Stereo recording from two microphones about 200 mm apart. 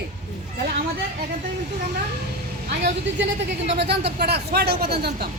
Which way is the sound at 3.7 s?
55° right (ahead or behind).